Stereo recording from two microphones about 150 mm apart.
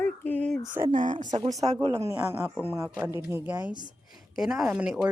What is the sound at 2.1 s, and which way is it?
A woman's voice, 15° right (ahead or behind).